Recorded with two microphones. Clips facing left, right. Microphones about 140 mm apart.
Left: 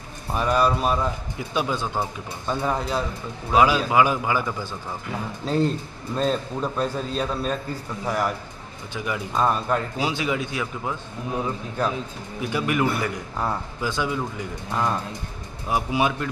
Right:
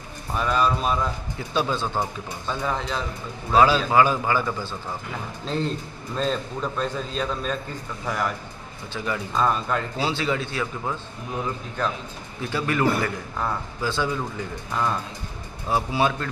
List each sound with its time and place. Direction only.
0.3 s a man's voice: 10° left (ahead or behind)
12.4 s a man's voice: 15° left (ahead or behind)
15.7 s a man's voice: 15° left (ahead or behind)